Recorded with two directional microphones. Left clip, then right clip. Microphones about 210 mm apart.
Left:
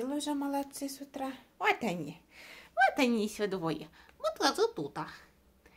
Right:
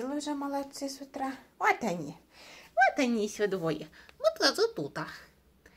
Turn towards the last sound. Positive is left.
turn(degrees=-5)  # may be behind; listen again after turning